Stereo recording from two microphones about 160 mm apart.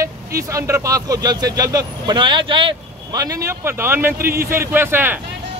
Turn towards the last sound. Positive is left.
turn(degrees=-15)  # may be behind; listen again after turning